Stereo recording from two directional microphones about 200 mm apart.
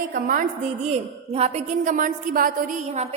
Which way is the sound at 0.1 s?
40° right (ahead or behind).